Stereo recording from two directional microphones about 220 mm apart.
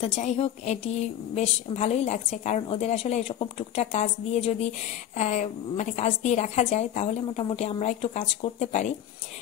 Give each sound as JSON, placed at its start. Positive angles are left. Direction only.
{"t": 0.0, "sound": "a woman's voice", "side_deg": 30}